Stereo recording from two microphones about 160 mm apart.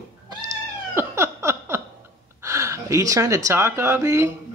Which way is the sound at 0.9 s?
15° right (ahead or behind).